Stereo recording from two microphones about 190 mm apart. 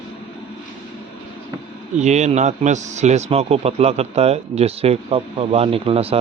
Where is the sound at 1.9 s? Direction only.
35° right (ahead or behind).